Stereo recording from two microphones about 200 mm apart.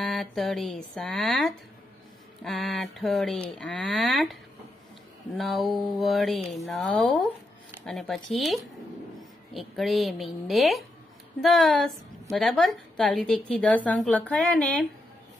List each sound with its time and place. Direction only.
0.0 s a woman's voice: centre (ahead or behind)
5.4 s a woman's voice: centre (ahead or behind)